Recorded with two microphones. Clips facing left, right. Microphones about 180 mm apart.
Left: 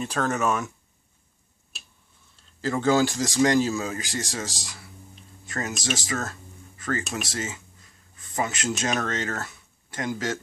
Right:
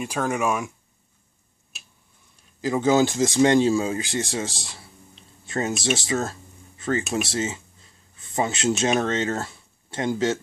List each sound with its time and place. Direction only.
0.0 s speech: 10° right (ahead or behind)
2.6 s speech: 20° right (ahead or behind)